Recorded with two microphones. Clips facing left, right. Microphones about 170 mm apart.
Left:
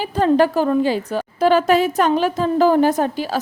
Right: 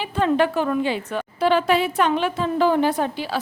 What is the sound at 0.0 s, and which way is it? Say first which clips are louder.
A woman's voice: left 4 dB; 40° left (ahead or behind).